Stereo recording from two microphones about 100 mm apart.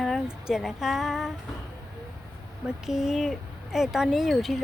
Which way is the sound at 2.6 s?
5° right (ahead or behind).